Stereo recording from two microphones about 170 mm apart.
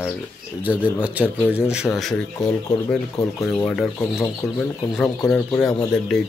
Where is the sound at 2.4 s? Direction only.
20° left (ahead or behind).